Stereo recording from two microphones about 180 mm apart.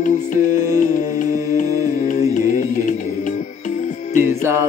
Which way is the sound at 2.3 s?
45° left (ahead or behind).